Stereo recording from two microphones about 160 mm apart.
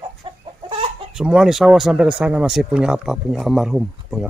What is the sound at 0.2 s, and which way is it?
Chicken, 30° right (ahead or behind).